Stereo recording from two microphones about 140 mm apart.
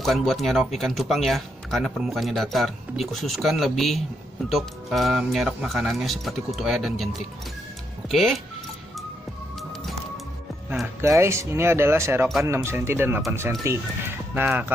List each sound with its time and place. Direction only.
0.0 s speech: centre (ahead or behind)
8.1 s speech: centre (ahead or behind)
11.0 s speech: 20° right (ahead or behind)